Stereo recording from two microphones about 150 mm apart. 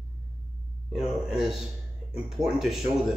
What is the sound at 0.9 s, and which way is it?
A man's voice, 5° right (ahead or behind).